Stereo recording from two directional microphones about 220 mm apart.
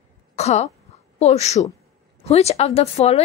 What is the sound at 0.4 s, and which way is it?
Throat clearing, 30° left (ahead or behind).